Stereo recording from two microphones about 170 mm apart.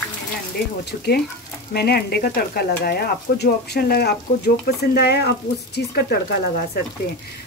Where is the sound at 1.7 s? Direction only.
70° left (ahead or behind).